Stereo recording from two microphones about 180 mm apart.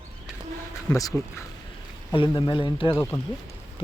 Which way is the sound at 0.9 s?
20° left (ahead or behind).